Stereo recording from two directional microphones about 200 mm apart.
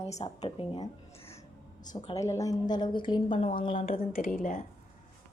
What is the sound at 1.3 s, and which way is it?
A woman's voice, 20° left (ahead or behind).